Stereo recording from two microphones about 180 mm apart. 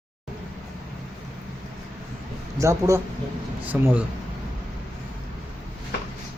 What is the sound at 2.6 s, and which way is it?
Speech, 15° right (ahead or behind).